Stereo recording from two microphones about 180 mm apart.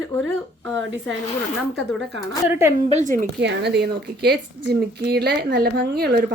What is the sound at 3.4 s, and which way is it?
Speech, 70° right (ahead or behind).